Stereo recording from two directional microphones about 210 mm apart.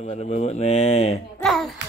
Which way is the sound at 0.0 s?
30° left (ahead or behind).